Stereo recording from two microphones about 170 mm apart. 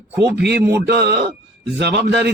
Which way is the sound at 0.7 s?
70° right (ahead or behind).